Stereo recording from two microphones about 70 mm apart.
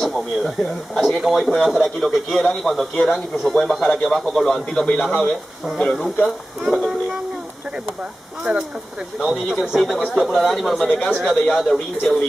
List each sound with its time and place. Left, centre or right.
0.0 s speech: centre
8.5 s speech: centre
9.2 s speech: centre